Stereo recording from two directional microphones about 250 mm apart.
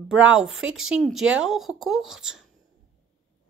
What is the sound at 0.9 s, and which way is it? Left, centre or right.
Speech, centre.